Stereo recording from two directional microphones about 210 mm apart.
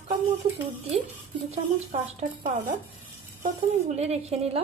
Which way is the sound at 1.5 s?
30° right (ahead or behind).